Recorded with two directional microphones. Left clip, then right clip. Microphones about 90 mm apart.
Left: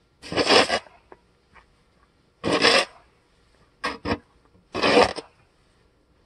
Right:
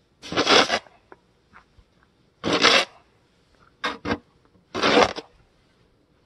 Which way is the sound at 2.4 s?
65° left (ahead or behind).